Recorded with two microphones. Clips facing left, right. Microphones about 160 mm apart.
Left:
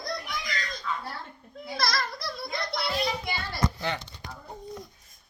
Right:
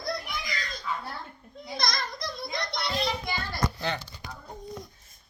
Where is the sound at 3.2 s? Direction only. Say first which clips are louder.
Left 1 dB; 15° left (ahead or behind).